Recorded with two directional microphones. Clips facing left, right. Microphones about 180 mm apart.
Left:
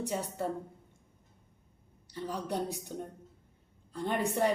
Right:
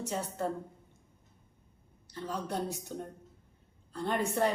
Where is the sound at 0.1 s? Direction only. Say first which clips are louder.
Left 1 dB; 15° left (ahead or behind).